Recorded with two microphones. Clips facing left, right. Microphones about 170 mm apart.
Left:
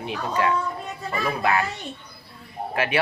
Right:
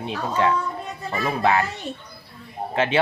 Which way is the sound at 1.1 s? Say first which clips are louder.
Right 2 dB; 20° right (ahead or behind).